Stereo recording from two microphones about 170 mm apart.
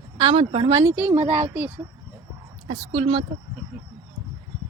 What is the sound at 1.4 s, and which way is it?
Speech, 10° right (ahead or behind).